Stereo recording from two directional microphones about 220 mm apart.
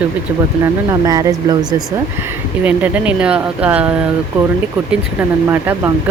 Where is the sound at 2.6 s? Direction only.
5° right (ahead or behind).